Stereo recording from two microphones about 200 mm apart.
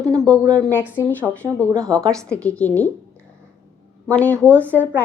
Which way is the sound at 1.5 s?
10° left (ahead or behind).